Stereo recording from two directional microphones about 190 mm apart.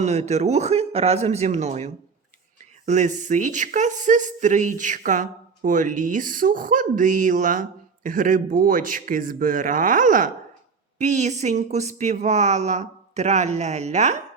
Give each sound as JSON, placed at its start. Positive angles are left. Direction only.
{"t": 0.0, "sound": "speech", "side_deg": -35}